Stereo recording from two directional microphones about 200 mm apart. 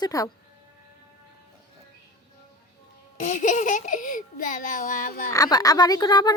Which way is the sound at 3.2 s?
40° left (ahead or behind).